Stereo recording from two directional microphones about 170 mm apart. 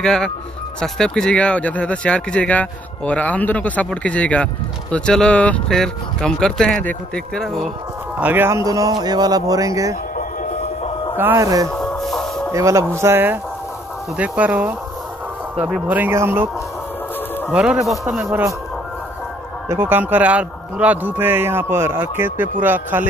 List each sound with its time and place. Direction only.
0.0 s speech: 5° left (ahead or behind)
8.2 s speech: 10° right (ahead or behind)
11.1 s speech: 15° right (ahead or behind)
11.7 s music: 5° left (ahead or behind)
12.5 s speech: 15° right (ahead or behind)
17.5 s speech: 5° right (ahead or behind)
19.7 s speech: 10° right (ahead or behind)